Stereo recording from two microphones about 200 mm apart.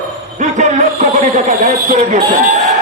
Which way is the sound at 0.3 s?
35° right (ahead or behind).